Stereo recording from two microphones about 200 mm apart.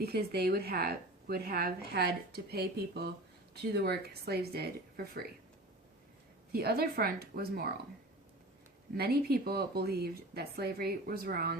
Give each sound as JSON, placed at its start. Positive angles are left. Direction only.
{"t": 0.0, "sound": "a woman's voice", "side_deg": -50}
{"t": 6.5, "sound": "a woman's voice", "side_deg": -50}
{"t": 9.0, "sound": "a woman's voice", "side_deg": -50}